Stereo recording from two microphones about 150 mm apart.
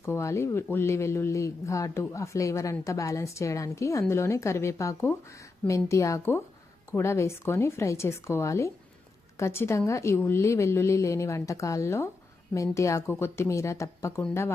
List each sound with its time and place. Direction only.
0.0 s a woman's voice: 20° left (ahead or behind)